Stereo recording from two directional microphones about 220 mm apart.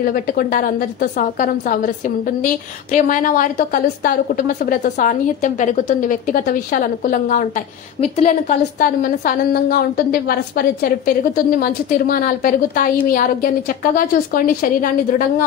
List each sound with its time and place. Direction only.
0.0 s a woman's voice: 40° left (ahead or behind)